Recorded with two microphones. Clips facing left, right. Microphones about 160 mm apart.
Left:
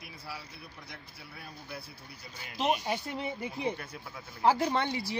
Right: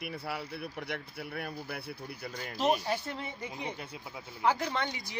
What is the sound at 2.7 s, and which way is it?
Speech, 20° left (ahead or behind).